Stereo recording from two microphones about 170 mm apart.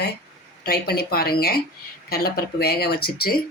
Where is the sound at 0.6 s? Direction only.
65° left (ahead or behind).